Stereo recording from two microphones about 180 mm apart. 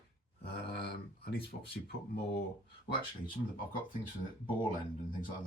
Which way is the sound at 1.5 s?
65° left (ahead or behind).